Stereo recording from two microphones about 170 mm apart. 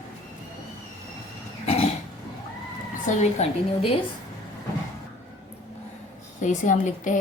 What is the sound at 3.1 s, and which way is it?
Speech, 35° left (ahead or behind).